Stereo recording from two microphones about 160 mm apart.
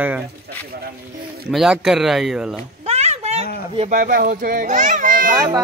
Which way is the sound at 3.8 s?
55° right (ahead or behind).